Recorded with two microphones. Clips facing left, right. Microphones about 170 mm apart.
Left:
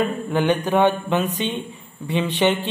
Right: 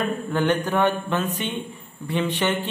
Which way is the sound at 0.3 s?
15° left (ahead or behind).